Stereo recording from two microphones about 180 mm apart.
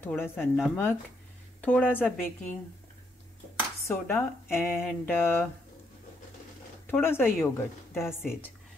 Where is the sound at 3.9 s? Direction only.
15° left (ahead or behind).